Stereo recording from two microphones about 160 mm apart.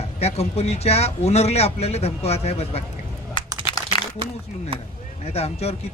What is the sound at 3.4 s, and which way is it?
Computer keyboard, 30° left (ahead or behind).